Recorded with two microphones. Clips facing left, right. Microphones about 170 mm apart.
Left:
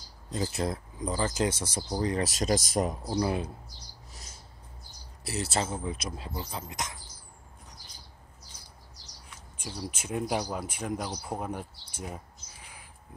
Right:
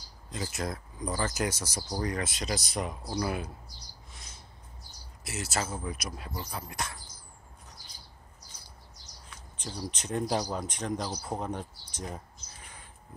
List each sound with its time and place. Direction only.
0.3 s speech: 30° left (ahead or behind)
2.2 s speech: 45° left (ahead or behind)
3.1 s speech: 25° left (ahead or behind)
5.2 s speech: 30° left (ahead or behind)
9.6 s speech: 5° left (ahead or behind)